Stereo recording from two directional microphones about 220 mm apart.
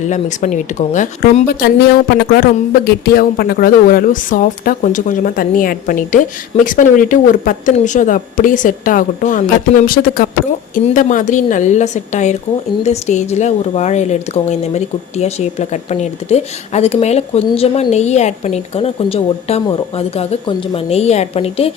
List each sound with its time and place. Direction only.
0.1 s a woman's voice: 35° left (ahead or behind)